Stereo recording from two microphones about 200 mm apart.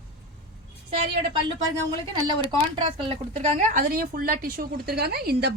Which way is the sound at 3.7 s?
45° right (ahead or behind).